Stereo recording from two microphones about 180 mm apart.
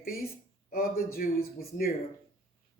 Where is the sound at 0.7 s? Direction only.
55° left (ahead or behind).